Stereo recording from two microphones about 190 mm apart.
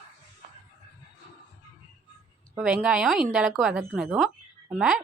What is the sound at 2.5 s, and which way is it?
Speech, 5° right (ahead or behind).